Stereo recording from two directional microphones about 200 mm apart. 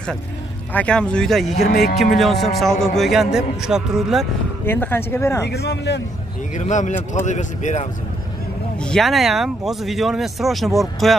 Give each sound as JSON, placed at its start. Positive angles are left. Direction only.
{"t": 0.7, "sound": "speech", "side_deg": 5}
{"t": 4.6, "sound": "speech", "side_deg": 10}
{"t": 5.5, "sound": "a man's voice", "side_deg": 55}
{"t": 6.5, "sound": "speech", "side_deg": 40}
{"t": 8.8, "sound": "speech", "side_deg": 0}